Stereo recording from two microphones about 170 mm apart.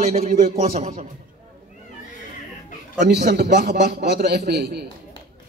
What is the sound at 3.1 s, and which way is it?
A man's voice, 75° right (ahead or behind).